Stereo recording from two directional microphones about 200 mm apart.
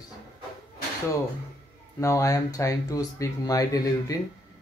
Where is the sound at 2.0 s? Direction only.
15° left (ahead or behind).